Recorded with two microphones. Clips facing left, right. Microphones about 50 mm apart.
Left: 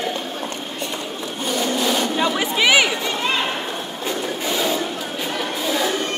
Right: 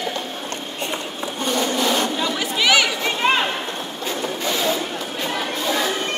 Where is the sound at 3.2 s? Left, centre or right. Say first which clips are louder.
Right 5 dB; right.